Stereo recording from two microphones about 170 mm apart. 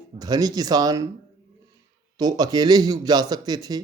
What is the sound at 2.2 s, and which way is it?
Speech, 25° right (ahead or behind).